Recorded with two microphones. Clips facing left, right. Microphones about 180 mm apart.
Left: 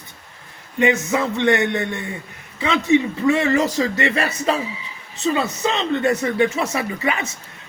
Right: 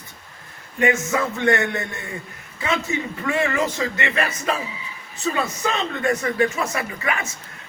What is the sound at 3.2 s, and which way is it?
Speech, 30° left (ahead or behind).